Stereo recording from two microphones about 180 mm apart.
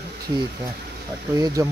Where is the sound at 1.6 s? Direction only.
15° right (ahead or behind).